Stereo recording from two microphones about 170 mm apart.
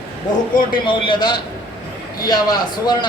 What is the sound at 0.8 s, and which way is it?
A man's voice, 30° left (ahead or behind).